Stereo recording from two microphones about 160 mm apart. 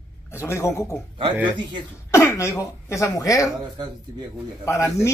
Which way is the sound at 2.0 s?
15° left (ahead or behind).